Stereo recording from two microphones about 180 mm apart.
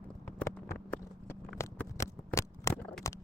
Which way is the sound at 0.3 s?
15° left (ahead or behind).